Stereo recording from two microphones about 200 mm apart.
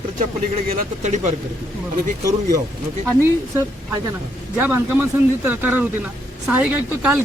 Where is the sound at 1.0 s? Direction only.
35° right (ahead or behind).